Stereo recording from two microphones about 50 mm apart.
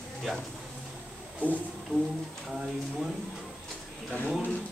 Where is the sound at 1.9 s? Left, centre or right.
Right.